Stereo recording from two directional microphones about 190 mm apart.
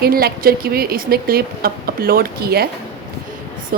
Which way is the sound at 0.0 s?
55° right (ahead or behind).